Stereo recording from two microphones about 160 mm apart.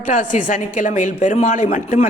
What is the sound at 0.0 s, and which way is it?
A woman's voice, 55° left (ahead or behind).